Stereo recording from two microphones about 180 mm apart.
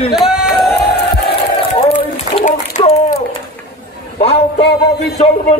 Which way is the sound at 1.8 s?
35° left (ahead or behind).